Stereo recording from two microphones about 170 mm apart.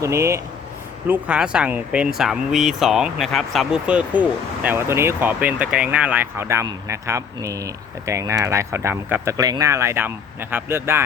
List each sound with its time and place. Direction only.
0.0 s speech: 15° right (ahead or behind)